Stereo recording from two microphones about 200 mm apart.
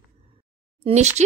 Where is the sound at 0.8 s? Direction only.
35° right (ahead or behind).